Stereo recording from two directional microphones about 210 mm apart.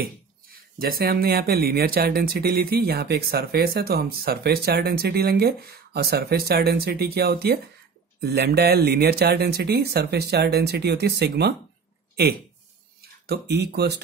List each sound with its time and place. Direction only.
0.0 s speech: 45° right (ahead or behind)
13.3 s speech: 50° right (ahead or behind)